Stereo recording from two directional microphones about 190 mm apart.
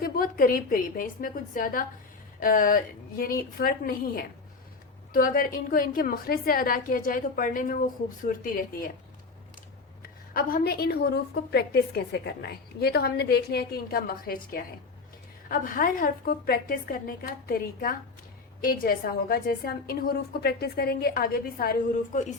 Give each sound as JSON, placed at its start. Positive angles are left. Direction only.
{"t": 0.0, "sound": "a woman's voice", "side_deg": 50}
{"t": 10.0, "sound": "a woman's voice", "side_deg": 50}